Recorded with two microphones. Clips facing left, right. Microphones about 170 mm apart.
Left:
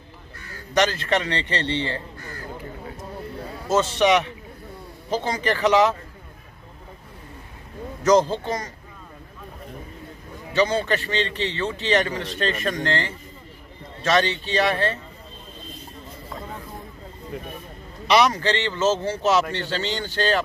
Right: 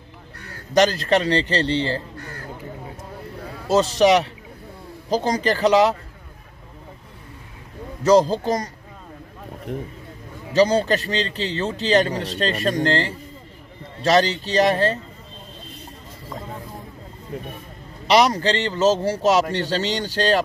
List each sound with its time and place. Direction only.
0.7 s a man's voice: 35° right (ahead or behind)
3.6 s a man's voice: 35° right (ahead or behind)
8.0 s a man's voice: 35° right (ahead or behind)
10.5 s a man's voice: 40° right (ahead or behind)
18.0 s a man's voice: 35° right (ahead or behind)